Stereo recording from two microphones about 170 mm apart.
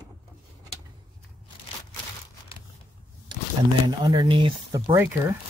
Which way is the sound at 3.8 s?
20° right (ahead or behind).